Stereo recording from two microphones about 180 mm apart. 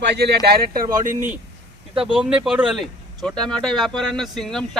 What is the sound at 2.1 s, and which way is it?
Speech, 5° right (ahead or behind).